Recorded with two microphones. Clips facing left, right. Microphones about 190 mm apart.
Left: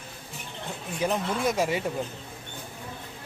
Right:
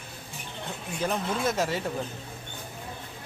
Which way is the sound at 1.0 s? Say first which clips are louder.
Left 2 dB; 10° left (ahead or behind).